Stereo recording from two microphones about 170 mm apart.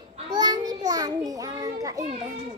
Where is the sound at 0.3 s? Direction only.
25° right (ahead or behind).